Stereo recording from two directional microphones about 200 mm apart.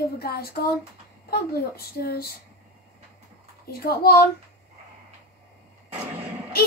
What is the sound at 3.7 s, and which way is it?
Child singing, 50° left (ahead or behind).